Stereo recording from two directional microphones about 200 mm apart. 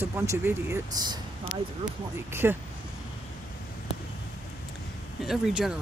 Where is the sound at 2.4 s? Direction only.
10° right (ahead or behind).